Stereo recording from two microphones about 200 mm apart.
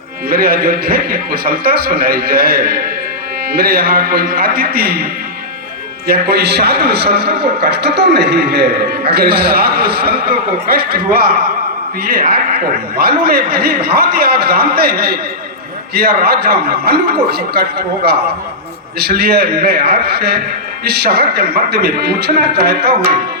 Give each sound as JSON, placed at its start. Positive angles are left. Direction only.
{"t": 0.3, "sound": "a man's voice", "side_deg": -50}
{"t": 6.1, "sound": "a man's voice", "side_deg": -55}